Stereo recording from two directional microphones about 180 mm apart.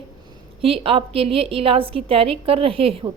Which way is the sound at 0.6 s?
30° right (ahead or behind).